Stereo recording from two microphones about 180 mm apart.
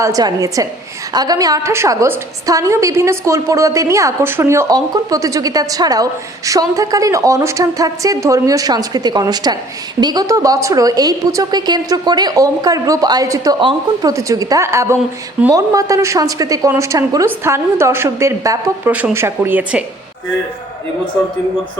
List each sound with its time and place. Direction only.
0.0 s a woman's voice: 20° right (ahead or behind)